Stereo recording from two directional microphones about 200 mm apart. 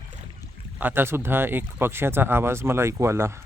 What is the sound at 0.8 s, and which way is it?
Speech, 10° right (ahead or behind).